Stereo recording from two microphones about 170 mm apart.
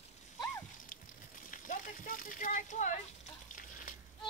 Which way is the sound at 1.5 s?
50° left (ahead or behind).